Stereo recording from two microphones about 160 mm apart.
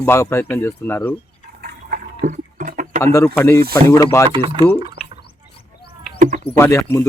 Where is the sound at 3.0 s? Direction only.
20° left (ahead or behind).